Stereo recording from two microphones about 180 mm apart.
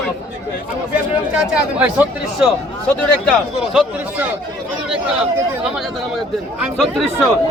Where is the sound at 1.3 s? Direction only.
5° right (ahead or behind).